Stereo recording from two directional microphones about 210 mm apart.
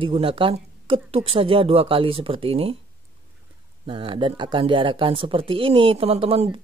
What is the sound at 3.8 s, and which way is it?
Speech, 25° right (ahead or behind).